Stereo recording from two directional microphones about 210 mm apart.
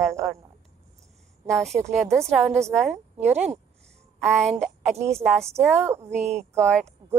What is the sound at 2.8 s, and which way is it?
Speech, 30° right (ahead or behind).